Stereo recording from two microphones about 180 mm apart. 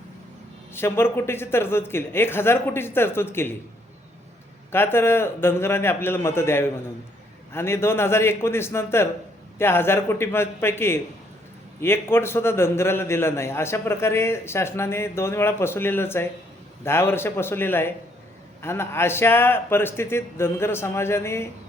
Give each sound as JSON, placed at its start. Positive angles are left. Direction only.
{"t": 0.7, "sound": "a man's voice", "side_deg": 15}
{"t": 4.7, "sound": "a man's voice", "side_deg": 15}